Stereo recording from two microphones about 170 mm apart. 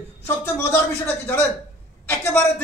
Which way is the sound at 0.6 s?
10° left (ahead or behind).